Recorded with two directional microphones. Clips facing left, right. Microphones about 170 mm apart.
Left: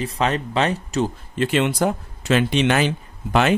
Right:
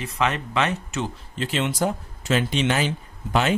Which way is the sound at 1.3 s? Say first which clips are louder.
Left 5 dB; 60° left (ahead or behind).